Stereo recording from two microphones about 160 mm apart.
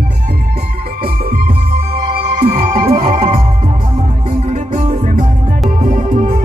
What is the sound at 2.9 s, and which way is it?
Music, 55° right (ahead or behind).